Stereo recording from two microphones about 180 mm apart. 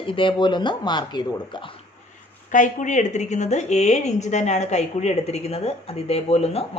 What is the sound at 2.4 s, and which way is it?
A woman's voice, 45° left (ahead or behind).